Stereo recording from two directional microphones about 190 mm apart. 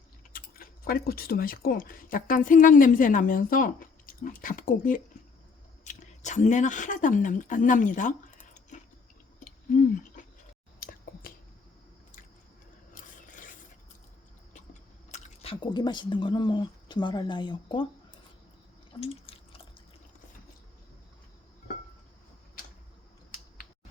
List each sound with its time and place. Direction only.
0.3 s speech: 50° left (ahead or behind)
9.4 s a sound: 45° left (ahead or behind)
10.8 s finger snapping: 50° left (ahead or behind)
12.9 s rub: 45° left (ahead or behind)
14.7 s speech: 35° left (ahead or behind)
18.9 s a sound: 30° left (ahead or behind)